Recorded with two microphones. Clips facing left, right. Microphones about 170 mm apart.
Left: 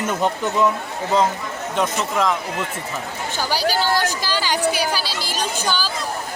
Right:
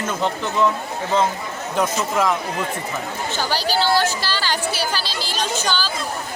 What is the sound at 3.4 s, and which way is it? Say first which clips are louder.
A woman's voice: left 1 dB; 10° left (ahead or behind).